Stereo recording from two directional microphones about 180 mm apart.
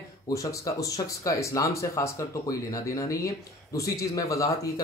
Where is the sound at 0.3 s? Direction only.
20° left (ahead or behind).